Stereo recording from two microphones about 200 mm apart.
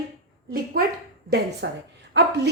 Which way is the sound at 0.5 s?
50° right (ahead or behind).